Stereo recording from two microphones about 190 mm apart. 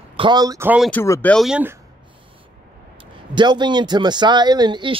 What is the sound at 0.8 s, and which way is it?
Speech, 10° left (ahead or behind).